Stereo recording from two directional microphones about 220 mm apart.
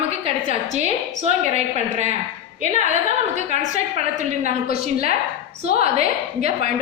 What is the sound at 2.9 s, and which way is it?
A woman's voice, 30° right (ahead or behind).